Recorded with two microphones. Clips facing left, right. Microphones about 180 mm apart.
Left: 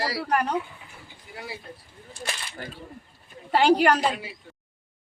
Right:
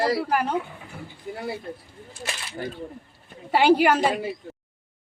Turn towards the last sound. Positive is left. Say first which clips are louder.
# right 7 dB
turn(degrees=-50)  # may be behind; listen again after turning